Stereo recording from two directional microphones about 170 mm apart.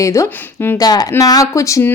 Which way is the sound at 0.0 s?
15° left (ahead or behind).